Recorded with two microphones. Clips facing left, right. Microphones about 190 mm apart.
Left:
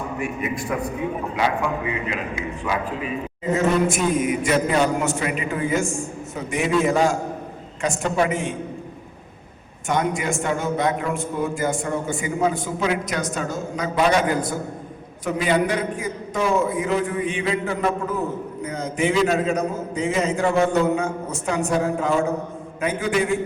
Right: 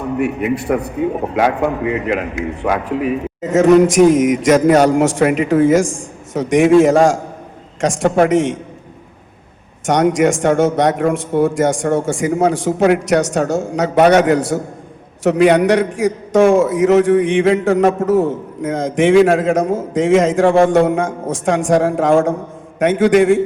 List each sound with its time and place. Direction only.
0.0 s a man's voice: 65° right (ahead or behind); by 8.5 s 90° right
9.8 s a woman's voice: 85° right
12.8 s a woman's voice: 70° right (ahead or behind); by 23.4 s 90° right